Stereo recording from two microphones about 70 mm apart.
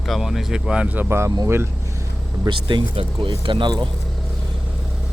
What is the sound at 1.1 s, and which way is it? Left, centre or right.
Speech, right.